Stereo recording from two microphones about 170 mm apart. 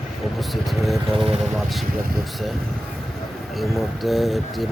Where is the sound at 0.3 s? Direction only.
Centre (ahead or behind).